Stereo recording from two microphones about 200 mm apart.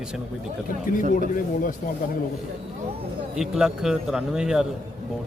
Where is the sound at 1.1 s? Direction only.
40° left (ahead or behind).